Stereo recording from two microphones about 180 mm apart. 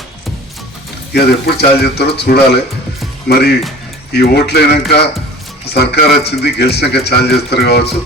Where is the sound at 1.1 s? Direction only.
60° left (ahead or behind).